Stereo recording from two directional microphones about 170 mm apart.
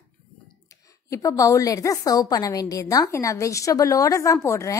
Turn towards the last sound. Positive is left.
turn(degrees=15)  # may be behind; listen again after turning